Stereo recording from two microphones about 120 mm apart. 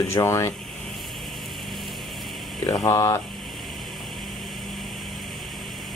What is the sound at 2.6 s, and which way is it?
Speech, 30° left (ahead or behind).